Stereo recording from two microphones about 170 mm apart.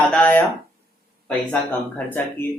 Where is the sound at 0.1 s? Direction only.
10° left (ahead or behind).